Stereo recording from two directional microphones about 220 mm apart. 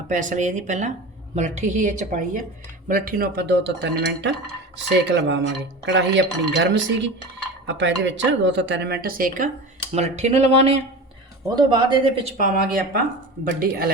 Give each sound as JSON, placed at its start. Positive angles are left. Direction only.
{"t": 0.1, "sound": "a woman's voice", "side_deg": -35}
{"t": 12.4, "sound": "a woman's voice", "side_deg": -40}